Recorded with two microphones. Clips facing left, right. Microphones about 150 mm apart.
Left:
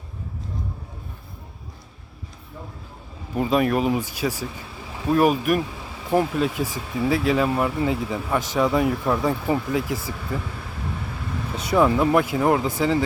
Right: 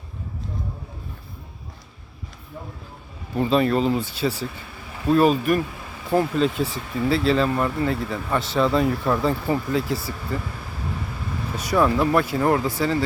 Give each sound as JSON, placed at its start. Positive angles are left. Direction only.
{"t": 3.3, "sound": "speech", "side_deg": 10}
{"t": 9.6, "sound": "speech", "side_deg": 15}
{"t": 11.5, "sound": "speech", "side_deg": 20}